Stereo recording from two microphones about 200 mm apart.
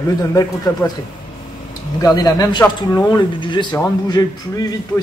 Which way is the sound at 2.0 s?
20° left (ahead or behind).